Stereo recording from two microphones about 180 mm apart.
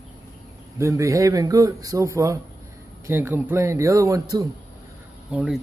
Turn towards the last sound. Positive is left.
turn(degrees=-5)  # may be behind; listen again after turning